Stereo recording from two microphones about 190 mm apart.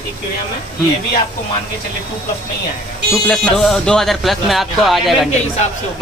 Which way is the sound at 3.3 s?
Centre (ahead or behind).